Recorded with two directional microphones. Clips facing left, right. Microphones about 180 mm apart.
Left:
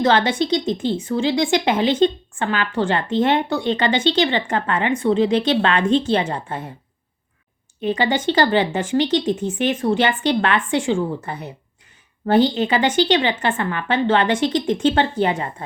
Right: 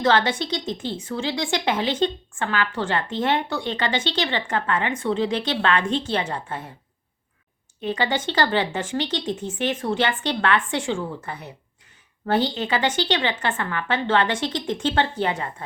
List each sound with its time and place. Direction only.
0.0 s speech: 20° left (ahead or behind)
7.8 s speech: 15° left (ahead or behind)